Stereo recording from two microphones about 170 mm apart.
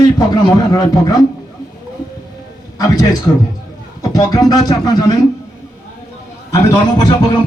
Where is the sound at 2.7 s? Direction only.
20° left (ahead or behind).